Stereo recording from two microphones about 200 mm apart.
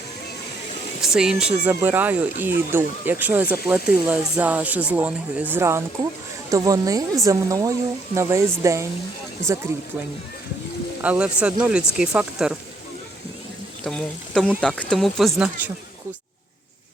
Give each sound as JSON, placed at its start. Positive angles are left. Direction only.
{"t": 1.0, "sound": "speech", "side_deg": -5}
{"t": 11.0, "sound": "speech", "side_deg": -5}
{"t": 13.8, "sound": "speech", "side_deg": 5}